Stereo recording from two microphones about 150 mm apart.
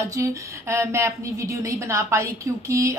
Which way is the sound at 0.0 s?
20° right (ahead or behind).